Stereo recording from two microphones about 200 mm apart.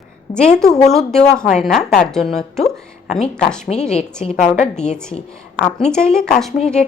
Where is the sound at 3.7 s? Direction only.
35° left (ahead or behind).